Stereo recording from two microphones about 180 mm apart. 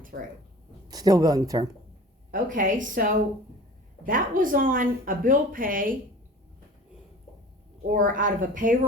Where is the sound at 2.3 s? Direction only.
45° right (ahead or behind).